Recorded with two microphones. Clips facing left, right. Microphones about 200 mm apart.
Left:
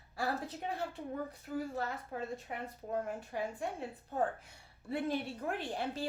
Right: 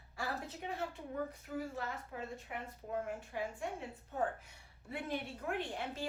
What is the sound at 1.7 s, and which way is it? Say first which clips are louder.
A woman's voice: left 4 dB; 35° left (ahead or behind).